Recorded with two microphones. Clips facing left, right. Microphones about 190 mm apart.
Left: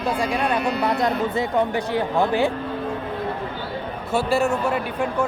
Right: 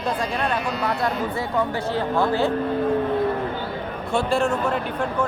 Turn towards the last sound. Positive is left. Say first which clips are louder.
# left 1 dB
turn(degrees=5)  # may be behind; listen again after turning